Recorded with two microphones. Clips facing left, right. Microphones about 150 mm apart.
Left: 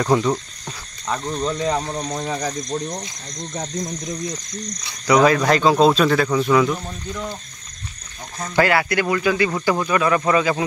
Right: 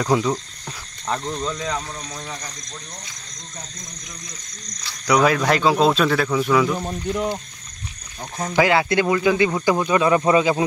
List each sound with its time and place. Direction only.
0.0 s speech: 5° right (ahead or behind)
1.4 s speech: 25° left (ahead or behind); by 2.3 s 40° left (ahead or behind)
2.3 s speech: 55° left (ahead or behind)
5.0 s speech: 5° right (ahead or behind)
8.5 s speech: 20° right (ahead or behind)